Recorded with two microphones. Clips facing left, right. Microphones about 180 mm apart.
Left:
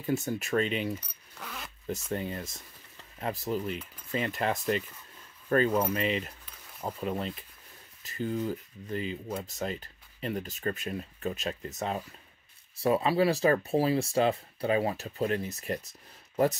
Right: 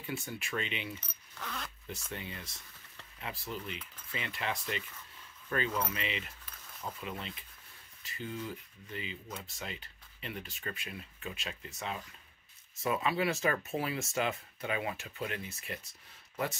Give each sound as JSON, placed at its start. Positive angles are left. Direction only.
{"t": 0.0, "sound": "speech", "side_deg": 40}
{"t": 1.0, "sound": "zipper", "side_deg": 10}
{"t": 2.1, "sound": "speech", "side_deg": 45}